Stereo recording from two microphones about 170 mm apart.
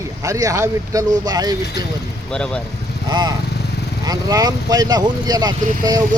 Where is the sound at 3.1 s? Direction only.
25° right (ahead or behind).